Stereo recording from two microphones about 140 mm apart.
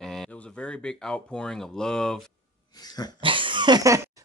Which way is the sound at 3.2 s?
35° right (ahead or behind).